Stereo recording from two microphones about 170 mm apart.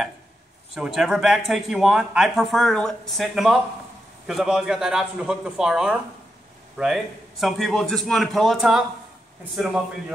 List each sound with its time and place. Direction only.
0.7 s speech: 5° right (ahead or behind)